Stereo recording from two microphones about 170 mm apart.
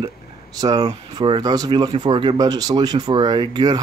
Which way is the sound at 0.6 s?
20° right (ahead or behind).